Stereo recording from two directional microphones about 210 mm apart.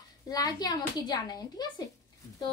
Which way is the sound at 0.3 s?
20° left (ahead or behind).